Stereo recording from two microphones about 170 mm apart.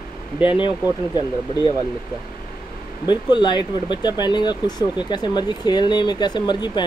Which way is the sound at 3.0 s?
25° left (ahead or behind).